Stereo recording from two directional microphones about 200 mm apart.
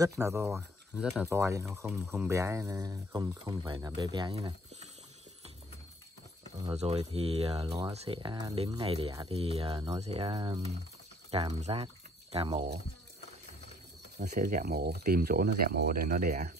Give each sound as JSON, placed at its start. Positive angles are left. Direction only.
{"t": 0.0, "sound": "speech", "side_deg": -15}
{"t": 0.5, "sound": "speech", "side_deg": -5}
{"t": 6.6, "sound": "speech", "side_deg": -30}
{"t": 7.6, "sound": "speech", "side_deg": -20}
{"t": 7.9, "sound": "speech", "side_deg": -30}
{"t": 11.6, "sound": "speech", "side_deg": -30}
{"t": 14.3, "sound": "speech", "side_deg": -45}